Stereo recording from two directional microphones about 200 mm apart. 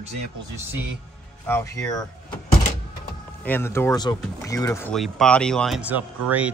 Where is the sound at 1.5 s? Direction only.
15° left (ahead or behind).